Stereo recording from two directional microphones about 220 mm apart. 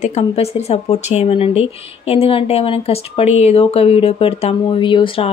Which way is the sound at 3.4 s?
25° left (ahead or behind).